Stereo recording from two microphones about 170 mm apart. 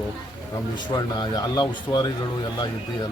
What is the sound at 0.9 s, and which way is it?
Speech, 25° left (ahead or behind).